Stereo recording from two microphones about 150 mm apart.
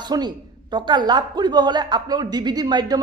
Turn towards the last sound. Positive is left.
turn(degrees=-25)  # may be behind; listen again after turning